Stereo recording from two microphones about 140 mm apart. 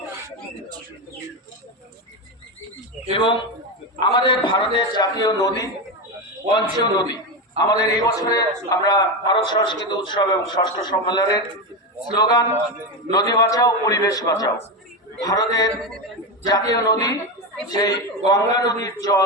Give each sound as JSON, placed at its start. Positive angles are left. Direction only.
{"t": 3.1, "sound": "a man's voice", "side_deg": 35}
{"t": 7.6, "sound": "a man's voice", "side_deg": -45}
{"t": 8.2, "sound": "a man's voice", "side_deg": 25}